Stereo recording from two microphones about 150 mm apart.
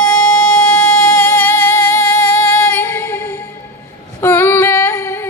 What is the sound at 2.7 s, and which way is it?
Music, 10° left (ahead or behind).